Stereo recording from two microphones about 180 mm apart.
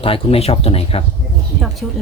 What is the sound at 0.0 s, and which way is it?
Speech, 30° left (ahead or behind).